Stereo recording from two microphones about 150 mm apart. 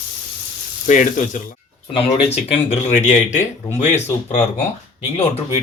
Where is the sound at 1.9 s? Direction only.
40° left (ahead or behind).